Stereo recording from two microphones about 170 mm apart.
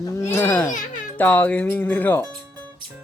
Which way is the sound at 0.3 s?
10° left (ahead or behind).